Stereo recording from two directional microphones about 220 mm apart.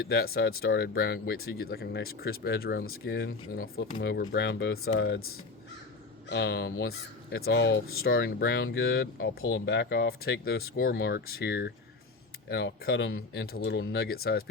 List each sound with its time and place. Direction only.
0.3 s speech: 50° left (ahead or behind)
6.2 s speech: 55° left (ahead or behind)
8.4 s speech: 55° left (ahead or behind)
9.4 s speech: 60° left (ahead or behind)